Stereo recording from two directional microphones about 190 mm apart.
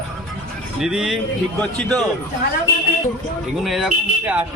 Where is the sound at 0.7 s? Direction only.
Centre (ahead or behind).